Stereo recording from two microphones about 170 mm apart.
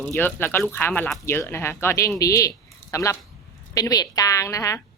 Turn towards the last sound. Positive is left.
turn(degrees=20)  # may be behind; listen again after turning